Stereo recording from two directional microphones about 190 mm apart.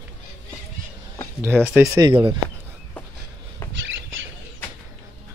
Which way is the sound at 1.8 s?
15° right (ahead or behind).